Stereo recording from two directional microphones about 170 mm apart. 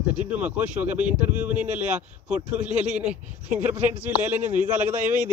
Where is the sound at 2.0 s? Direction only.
10° right (ahead or behind).